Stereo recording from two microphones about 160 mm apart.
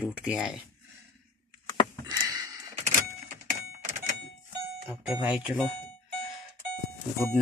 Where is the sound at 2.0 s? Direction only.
20° right (ahead or behind).